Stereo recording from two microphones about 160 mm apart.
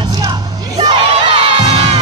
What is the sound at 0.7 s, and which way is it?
Crowd, 35° right (ahead or behind).